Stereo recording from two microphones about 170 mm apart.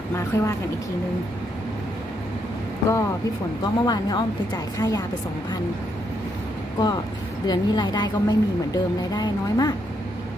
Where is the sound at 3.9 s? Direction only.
25° left (ahead or behind).